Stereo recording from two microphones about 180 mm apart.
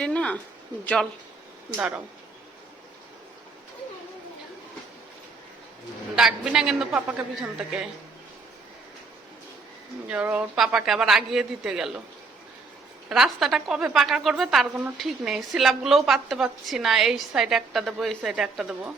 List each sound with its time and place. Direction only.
0.0 s a sound: 5° left (ahead or behind)
1.7 s speech: 10° right (ahead or behind)
6.1 s a woman's voice: 5° right (ahead or behind)
10.1 s a woman's voice: 10° right (ahead or behind)
13.1 s a woman's voice: 5° right (ahead or behind)